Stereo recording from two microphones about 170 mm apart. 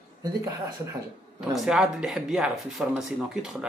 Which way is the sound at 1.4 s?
Centre (ahead or behind).